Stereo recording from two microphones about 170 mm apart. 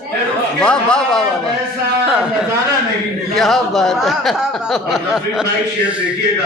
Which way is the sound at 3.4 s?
Centre (ahead or behind).